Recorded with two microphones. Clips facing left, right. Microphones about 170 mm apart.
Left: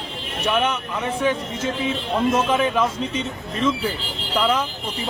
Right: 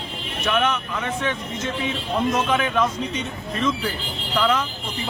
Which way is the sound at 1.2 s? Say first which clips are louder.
Left 4 dB; 10° left (ahead or behind).